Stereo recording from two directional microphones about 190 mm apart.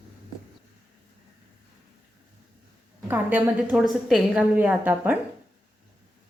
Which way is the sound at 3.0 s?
10° right (ahead or behind).